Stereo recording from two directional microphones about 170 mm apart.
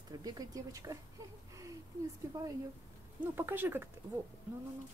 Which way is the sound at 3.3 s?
10° right (ahead or behind).